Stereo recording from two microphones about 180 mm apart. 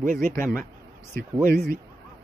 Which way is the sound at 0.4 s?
15° left (ahead or behind).